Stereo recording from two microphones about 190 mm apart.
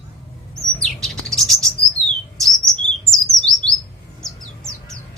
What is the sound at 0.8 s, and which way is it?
Bird, centre (ahead or behind).